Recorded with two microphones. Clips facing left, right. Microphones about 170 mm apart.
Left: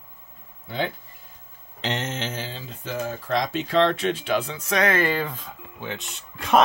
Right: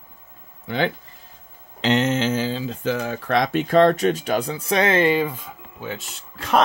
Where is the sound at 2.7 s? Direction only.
90° right.